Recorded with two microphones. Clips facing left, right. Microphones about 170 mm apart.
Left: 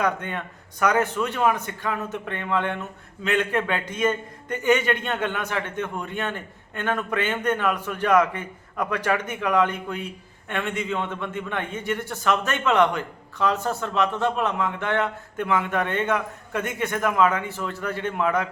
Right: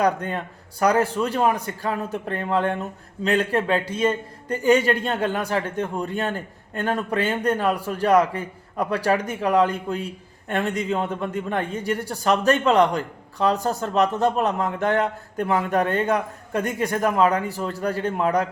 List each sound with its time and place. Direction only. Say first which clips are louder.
0.0 s a man's voice: right 4 dB; 35° right (ahead or behind)